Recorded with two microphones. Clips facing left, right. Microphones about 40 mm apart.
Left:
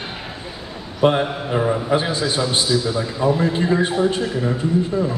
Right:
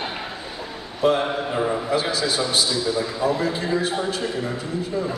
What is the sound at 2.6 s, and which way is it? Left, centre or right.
A man's voice, left.